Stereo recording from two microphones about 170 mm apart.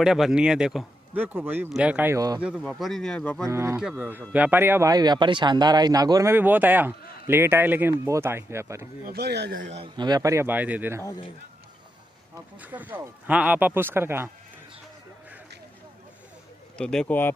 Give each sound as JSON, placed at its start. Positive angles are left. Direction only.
{"t": 0.0, "sound": "speech", "side_deg": 0}
{"t": 2.4, "sound": "speech", "side_deg": 0}
{"t": 3.4, "sound": "speech", "side_deg": -15}
{"t": 3.8, "sound": "speech", "side_deg": -5}
{"t": 9.0, "sound": "speech", "side_deg": -70}
{"t": 9.8, "sound": "speech", "side_deg": -25}
{"t": 11.1, "sound": "a man's voice", "side_deg": 30}
{"t": 12.5, "sound": "speech", "side_deg": -10}
{"t": 16.7, "sound": "speech", "side_deg": 5}